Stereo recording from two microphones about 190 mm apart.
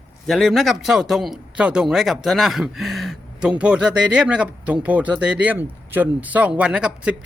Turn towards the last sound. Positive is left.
turn(degrees=-5)  # may be behind; listen again after turning